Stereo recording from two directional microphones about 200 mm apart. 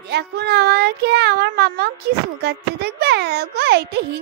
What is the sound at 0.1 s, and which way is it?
A child's voice, 55° right (ahead or behind).